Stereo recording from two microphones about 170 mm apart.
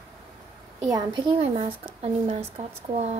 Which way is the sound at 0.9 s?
30° right (ahead or behind).